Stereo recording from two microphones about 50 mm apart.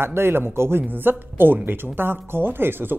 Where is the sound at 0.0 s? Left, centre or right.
Right.